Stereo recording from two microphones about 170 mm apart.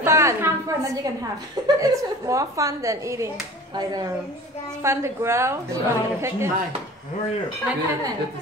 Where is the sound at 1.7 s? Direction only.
20° right (ahead or behind).